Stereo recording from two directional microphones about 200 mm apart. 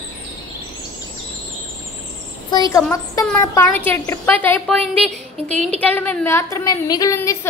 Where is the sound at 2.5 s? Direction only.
20° left (ahead or behind).